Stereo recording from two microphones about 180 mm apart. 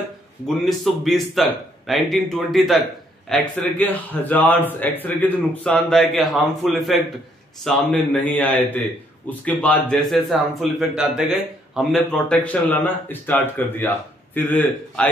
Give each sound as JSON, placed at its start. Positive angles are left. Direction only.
{"t": 0.7, "sound": "a man's voice", "side_deg": 0}